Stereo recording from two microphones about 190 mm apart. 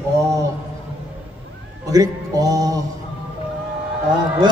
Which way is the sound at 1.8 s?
20° right (ahead or behind).